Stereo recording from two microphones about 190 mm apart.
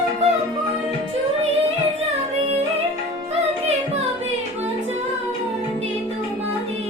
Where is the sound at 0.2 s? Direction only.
35° right (ahead or behind).